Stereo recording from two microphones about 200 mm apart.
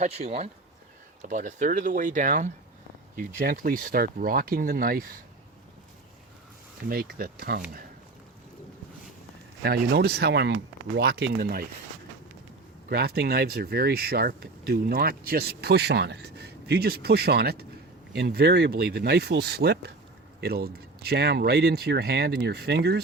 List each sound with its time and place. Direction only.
0.0 s speech: 30° right (ahead or behind)
6.8 s speech: 50° right (ahead or behind)
9.6 s speech: 50° right (ahead or behind)
12.9 s speech: 50° right (ahead or behind)